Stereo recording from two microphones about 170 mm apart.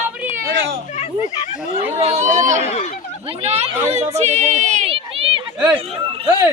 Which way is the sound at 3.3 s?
40° right (ahead or behind).